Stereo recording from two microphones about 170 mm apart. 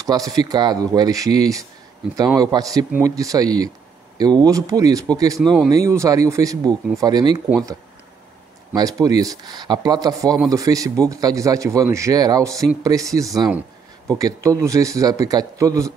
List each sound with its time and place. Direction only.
0.0 s speech: 20° right (ahead or behind)
5.4 s speech: 5° left (ahead or behind)
5.9 s speech: 20° right (ahead or behind)
8.7 s speech: 20° right (ahead or behind)